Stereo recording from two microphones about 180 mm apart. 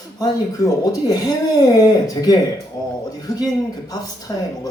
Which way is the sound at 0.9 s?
20° left (ahead or behind).